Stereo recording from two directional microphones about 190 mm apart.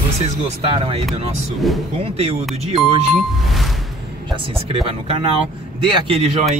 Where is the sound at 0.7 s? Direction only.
30° right (ahead or behind).